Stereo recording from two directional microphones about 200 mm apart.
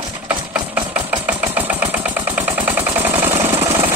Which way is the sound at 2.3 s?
10° right (ahead or behind).